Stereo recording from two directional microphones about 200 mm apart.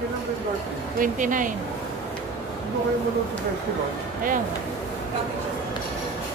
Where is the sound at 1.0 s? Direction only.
40° right (ahead or behind).